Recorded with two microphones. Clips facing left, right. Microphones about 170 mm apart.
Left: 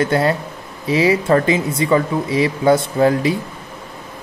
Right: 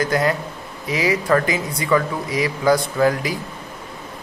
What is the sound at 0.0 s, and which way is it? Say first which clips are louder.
Speech: left 3 dB; 30° left (ahead or behind).